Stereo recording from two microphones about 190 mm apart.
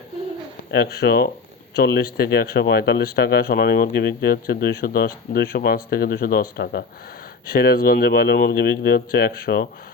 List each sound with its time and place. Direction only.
0.7 s speech: 55° left (ahead or behind)